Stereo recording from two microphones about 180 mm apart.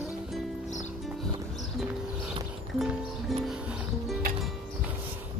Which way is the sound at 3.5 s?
5° right (ahead or behind).